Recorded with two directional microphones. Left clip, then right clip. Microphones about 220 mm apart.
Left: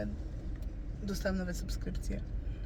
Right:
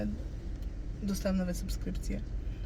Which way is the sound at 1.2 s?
10° right (ahead or behind).